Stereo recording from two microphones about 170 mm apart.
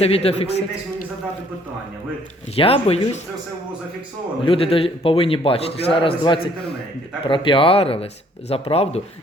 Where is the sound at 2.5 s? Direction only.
35° left (ahead or behind).